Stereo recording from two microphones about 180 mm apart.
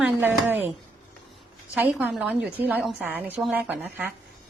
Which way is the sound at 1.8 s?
10° right (ahead or behind).